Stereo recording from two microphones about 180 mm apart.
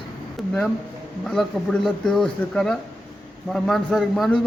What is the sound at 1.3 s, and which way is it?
Speech, 5° left (ahead or behind).